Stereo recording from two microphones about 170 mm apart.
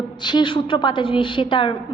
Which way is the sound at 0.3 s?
30° left (ahead or behind).